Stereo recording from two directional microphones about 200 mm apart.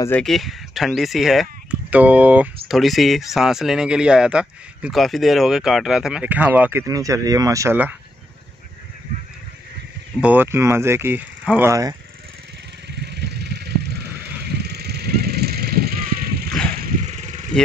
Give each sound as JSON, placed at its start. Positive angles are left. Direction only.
{"t": 0.0, "sound": "speech", "side_deg": 5}
{"t": 10.2, "sound": "speech", "side_deg": -10}
{"t": 13.0, "sound": "vehicle", "side_deg": -55}
{"t": 16.4, "sound": "a sound", "side_deg": 5}
{"t": 16.8, "sound": "vehicle", "side_deg": -40}